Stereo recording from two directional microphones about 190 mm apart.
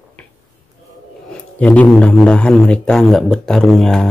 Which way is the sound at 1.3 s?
5° left (ahead or behind).